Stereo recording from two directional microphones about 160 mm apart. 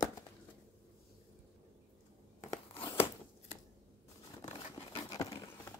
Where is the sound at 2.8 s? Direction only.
35° left (ahead or behind).